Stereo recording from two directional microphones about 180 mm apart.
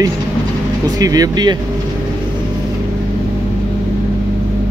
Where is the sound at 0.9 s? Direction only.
20° right (ahead or behind).